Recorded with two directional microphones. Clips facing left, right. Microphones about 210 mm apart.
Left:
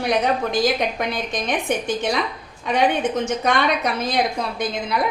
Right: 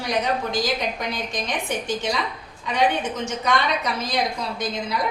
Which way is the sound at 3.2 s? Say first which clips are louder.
Left 3 dB; 55° left (ahead or behind).